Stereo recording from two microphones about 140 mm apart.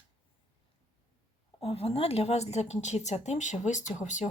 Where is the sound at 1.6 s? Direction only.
45° left (ahead or behind).